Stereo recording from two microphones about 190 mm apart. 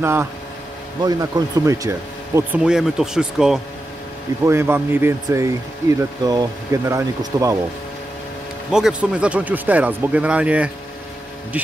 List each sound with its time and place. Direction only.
0.0 s speech: 10° right (ahead or behind)
8.7 s speech: 5° right (ahead or behind)